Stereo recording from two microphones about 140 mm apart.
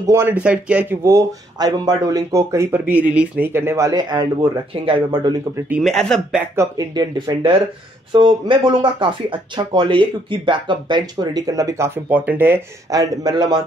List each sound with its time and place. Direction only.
0.0 s speech: 20° right (ahead or behind)
1.0 s speech: 25° right (ahead or behind)
5.8 s speech: centre (ahead or behind)
6.5 s speech: 20° right (ahead or behind)
12.9 s speech: 25° right (ahead or behind)